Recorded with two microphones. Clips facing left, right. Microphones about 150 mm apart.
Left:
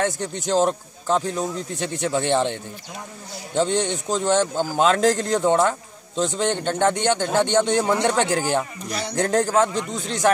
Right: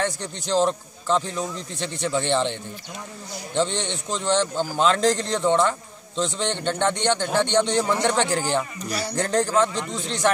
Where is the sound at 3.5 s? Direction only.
45° left (ahead or behind).